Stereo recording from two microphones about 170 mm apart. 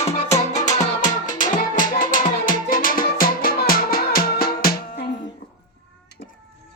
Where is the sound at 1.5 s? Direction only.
50° left (ahead or behind).